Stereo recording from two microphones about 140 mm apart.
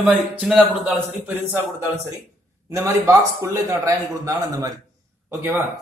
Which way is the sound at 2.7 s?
20° right (ahead or behind).